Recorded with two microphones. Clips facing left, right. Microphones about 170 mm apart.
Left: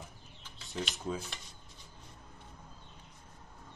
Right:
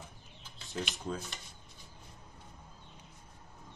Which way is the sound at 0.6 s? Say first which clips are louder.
Even; centre (ahead or behind).